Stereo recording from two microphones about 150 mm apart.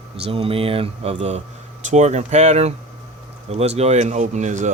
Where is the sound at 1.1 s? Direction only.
50° right (ahead or behind).